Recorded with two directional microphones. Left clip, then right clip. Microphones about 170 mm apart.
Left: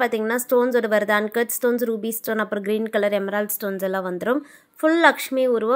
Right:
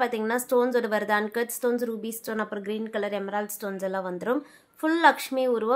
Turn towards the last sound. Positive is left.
turn(degrees=20)  # may be behind; listen again after turning